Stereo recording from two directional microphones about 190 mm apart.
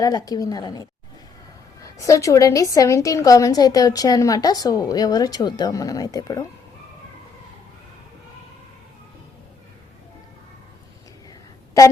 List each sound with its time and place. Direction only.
0.0 s a woman's voice: 20° left (ahead or behind)